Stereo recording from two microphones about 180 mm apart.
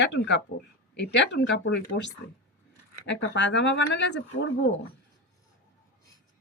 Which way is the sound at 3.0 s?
90° left.